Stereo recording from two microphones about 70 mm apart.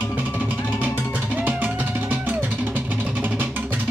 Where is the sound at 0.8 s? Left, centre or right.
Right.